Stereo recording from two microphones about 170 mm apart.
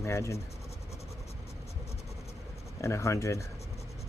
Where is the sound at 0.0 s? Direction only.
15° left (ahead or behind).